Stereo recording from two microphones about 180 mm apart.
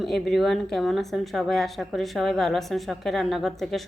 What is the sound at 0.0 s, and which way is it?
Speech, centre (ahead or behind).